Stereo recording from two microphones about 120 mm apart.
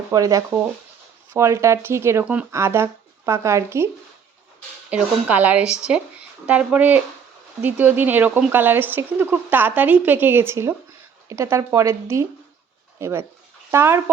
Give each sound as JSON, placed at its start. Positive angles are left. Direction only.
{"t": 0.1, "sound": "speech", "side_deg": -30}
{"t": 2.2, "sound": "speech", "side_deg": -10}
{"t": 2.5, "sound": "speech", "side_deg": -20}
{"t": 4.9, "sound": "speech", "side_deg": -10}